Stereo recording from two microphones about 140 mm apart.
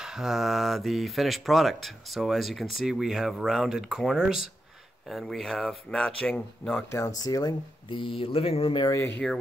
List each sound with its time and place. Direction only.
0.0 s speech: 5° right (ahead or behind)
7.2 s speech: 25° left (ahead or behind)
9.2 s speech: 5° left (ahead or behind)